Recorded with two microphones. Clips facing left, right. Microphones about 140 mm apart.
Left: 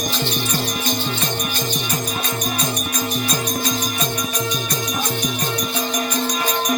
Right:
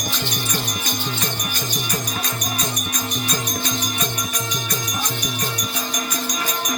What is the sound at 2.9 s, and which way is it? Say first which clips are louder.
Music: left 3 dB; 30° left (ahead or behind).